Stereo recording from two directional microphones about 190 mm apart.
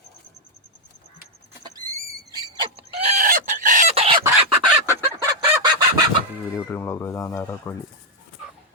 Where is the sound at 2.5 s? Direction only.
35° right (ahead or behind).